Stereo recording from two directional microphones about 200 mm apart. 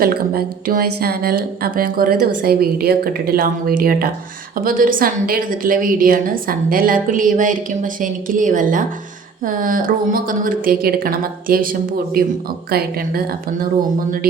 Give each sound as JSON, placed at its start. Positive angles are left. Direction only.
{"t": 0.0, "sound": "a woman's voice", "side_deg": -50}